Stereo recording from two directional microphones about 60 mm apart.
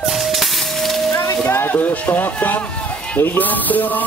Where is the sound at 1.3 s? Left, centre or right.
Left; by 3.2 s centre.